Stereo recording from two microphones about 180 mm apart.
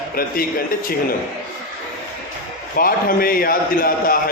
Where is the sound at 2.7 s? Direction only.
55° left (ahead or behind).